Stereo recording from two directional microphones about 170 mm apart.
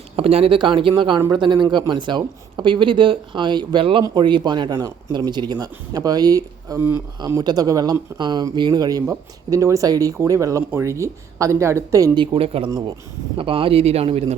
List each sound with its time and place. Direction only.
0.2 s a man's voice: 35° right (ahead or behind)